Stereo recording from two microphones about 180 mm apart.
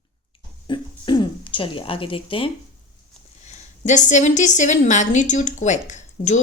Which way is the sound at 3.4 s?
40° left (ahead or behind).